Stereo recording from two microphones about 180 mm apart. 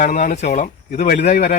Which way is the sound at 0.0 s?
45° left (ahead or behind).